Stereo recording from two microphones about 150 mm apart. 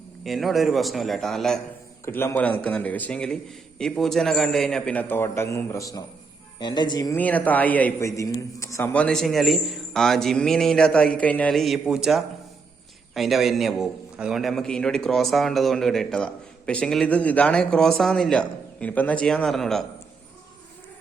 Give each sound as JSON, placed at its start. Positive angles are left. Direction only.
{"t": 0.3, "sound": "a man's voice", "side_deg": 0}
{"t": 2.0, "sound": "a man's voice", "side_deg": 15}
{"t": 7.2, "sound": "a man's voice", "side_deg": 10}